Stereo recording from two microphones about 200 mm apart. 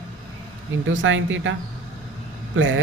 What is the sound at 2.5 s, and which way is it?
Speech, 70° right (ahead or behind).